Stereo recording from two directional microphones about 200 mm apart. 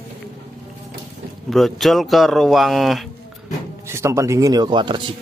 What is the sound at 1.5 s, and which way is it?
Speech, centre (ahead or behind).